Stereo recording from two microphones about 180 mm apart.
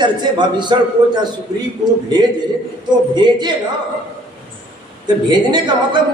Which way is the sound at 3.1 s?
25° right (ahead or behind).